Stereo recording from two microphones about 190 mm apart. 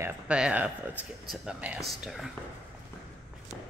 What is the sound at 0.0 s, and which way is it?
A woman's voice, 5° right (ahead or behind).